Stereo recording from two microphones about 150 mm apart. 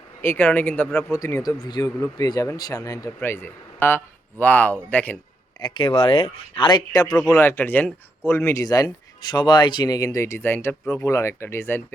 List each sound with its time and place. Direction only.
0.2 s speech: 15° left (ahead or behind)
1.1 s speech: 20° left (ahead or behind)
5.5 s speech: 30° left (ahead or behind)
6.7 s speech: 25° left (ahead or behind)
7.3 s speech: 15° left (ahead or behind)